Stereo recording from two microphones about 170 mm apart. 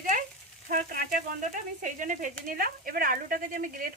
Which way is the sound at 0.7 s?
60° right (ahead or behind).